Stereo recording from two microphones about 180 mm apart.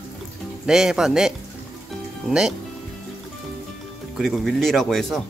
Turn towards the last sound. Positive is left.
turn(degrees=0)  # may be behind; listen again after turning